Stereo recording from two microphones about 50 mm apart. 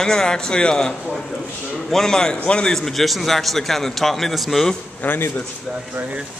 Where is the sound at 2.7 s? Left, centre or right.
Centre.